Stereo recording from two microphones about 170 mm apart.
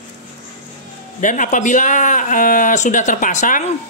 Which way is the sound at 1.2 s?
50° left (ahead or behind).